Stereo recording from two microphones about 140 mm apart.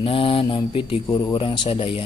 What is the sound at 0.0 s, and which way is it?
Speech, 40° left (ahead or behind).